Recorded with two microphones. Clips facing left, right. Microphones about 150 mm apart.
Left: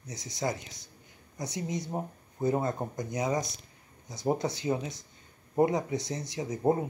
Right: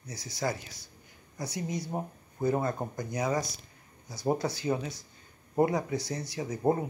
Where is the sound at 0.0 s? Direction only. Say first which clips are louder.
Even; 20° left (ahead or behind).